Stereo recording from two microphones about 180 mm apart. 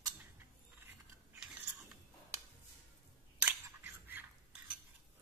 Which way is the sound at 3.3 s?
10° right (ahead or behind).